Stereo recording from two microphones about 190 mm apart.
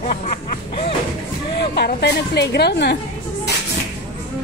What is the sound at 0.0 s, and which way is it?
Music, 40° left (ahead or behind).